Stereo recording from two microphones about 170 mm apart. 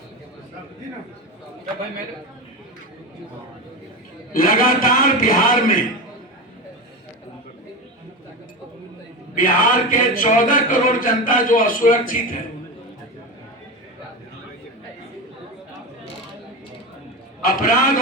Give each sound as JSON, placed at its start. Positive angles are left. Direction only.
{"t": 4.3, "sound": "a man's voice", "side_deg": 55}
{"t": 9.3, "sound": "speech", "side_deg": 50}
{"t": 17.4, "sound": "a man's voice", "side_deg": 55}